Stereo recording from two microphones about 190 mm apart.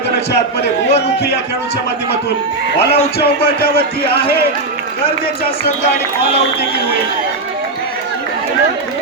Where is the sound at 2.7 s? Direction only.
60° left (ahead or behind).